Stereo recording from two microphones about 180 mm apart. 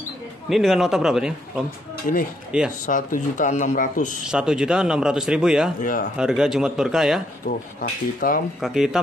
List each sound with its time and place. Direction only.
0.5 s speech: centre (ahead or behind)
2.1 s speech: 40° left (ahead or behind)
2.5 s speech: 5° right (ahead or behind)
2.9 s speech: 45° left (ahead or behind)
4.3 s speech: 5° right (ahead or behind)
5.8 s speech: 50° left (ahead or behind)
6.1 s speech: 5° right (ahead or behind)
7.4 s speech: 50° left (ahead or behind)
8.5 s speech: centre (ahead or behind)